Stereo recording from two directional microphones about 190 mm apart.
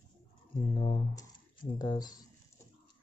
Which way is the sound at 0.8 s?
25° left (ahead or behind).